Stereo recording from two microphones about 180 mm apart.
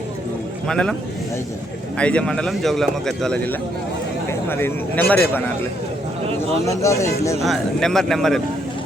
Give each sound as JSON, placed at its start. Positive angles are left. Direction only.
{"t": 0.7, "sound": "speech", "side_deg": 5}
{"t": 2.0, "sound": "speech", "side_deg": 5}
{"t": 6.7, "sound": "a man's voice", "side_deg": 15}
{"t": 7.4, "sound": "speech", "side_deg": 0}